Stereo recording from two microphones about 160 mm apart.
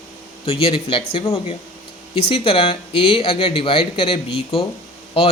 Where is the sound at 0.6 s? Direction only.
35° left (ahead or behind).